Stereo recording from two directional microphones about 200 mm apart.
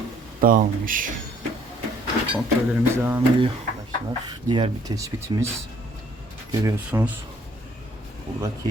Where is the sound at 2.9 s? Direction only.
10° right (ahead or behind).